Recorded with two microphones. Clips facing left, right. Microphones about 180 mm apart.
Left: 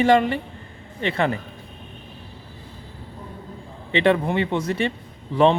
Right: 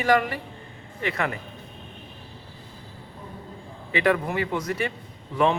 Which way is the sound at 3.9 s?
25° left (ahead or behind).